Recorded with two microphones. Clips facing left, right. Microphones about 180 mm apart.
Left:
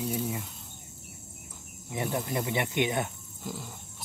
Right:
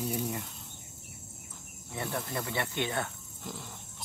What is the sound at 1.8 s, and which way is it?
Speech, 15° left (ahead or behind).